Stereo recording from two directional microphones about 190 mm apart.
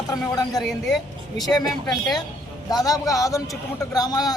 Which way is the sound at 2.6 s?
20° left (ahead or behind).